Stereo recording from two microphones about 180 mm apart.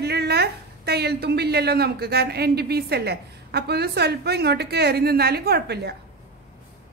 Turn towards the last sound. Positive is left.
turn(degrees=-65)  # may be behind; listen again after turning